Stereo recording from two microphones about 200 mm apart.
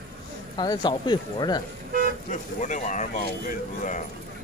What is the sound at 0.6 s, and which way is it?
Speech, 20° left (ahead or behind).